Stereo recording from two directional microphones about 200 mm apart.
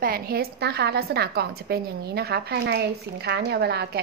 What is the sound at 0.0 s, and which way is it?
A woman's voice, 50° right (ahead or behind).